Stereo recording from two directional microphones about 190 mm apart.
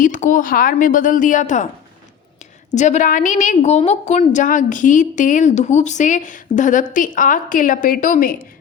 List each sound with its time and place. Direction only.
0.0 s a woman's voice: 40° left (ahead or behind)